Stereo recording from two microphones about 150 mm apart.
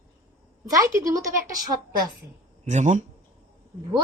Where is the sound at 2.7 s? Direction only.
55° right (ahead or behind).